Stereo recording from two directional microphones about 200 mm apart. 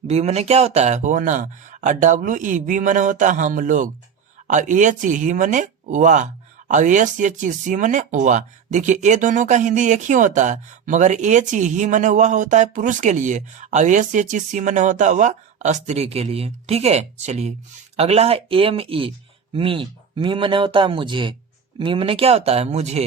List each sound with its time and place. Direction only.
0.1 s speech: 35° right (ahead or behind)